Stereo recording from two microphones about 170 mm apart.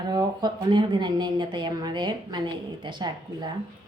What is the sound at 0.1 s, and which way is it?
A woman's voice, 25° right (ahead or behind).